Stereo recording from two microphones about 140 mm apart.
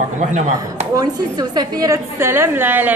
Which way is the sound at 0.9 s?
30° right (ahead or behind).